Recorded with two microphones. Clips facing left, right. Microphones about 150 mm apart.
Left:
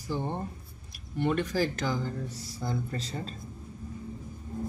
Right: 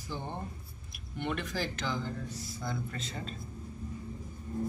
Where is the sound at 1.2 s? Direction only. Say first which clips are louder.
Left 7 dB; 35° left (ahead or behind).